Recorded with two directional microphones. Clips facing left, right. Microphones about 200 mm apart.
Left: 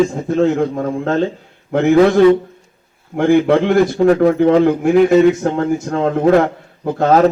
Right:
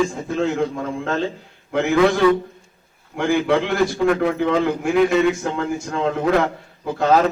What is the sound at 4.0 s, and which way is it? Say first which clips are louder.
A man's voice: left 8 dB; 40° left (ahead or behind).